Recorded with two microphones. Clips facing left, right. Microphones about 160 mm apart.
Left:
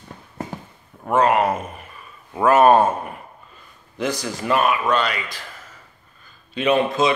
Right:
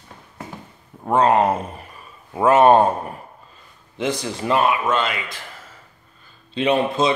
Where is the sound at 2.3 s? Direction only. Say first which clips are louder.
Right 1 dB; 25° right (ahead or behind).